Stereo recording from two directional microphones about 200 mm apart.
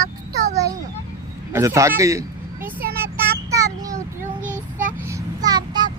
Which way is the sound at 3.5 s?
15° right (ahead or behind).